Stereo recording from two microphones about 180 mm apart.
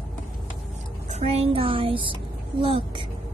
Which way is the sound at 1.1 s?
35° right (ahead or behind).